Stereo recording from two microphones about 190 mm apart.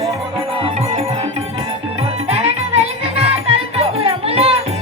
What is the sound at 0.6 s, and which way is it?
Music, 30° right (ahead or behind).